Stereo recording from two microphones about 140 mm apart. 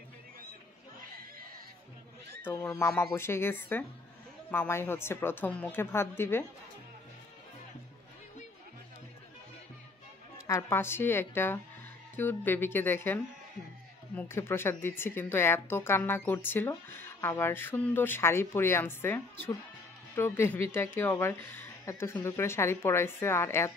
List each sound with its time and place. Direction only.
2.5 s speech: 20° left (ahead or behind)
10.3 s speech: 20° left (ahead or behind)